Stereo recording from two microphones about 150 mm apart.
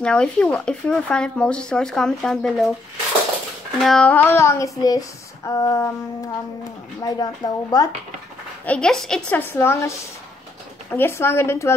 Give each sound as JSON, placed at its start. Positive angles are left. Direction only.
{"t": 0.0, "sound": "speech", "side_deg": 5}
{"t": 3.8, "sound": "a sound", "side_deg": 5}
{"t": 8.6, "sound": "speech", "side_deg": 5}
{"t": 9.4, "sound": "speech", "side_deg": 15}